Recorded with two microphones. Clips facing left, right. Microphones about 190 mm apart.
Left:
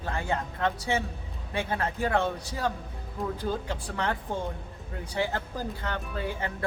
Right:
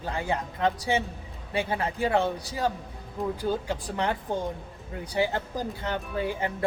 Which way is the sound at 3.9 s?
20° right (ahead or behind).